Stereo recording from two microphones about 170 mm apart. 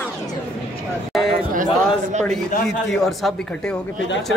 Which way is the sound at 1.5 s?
45° right (ahead or behind).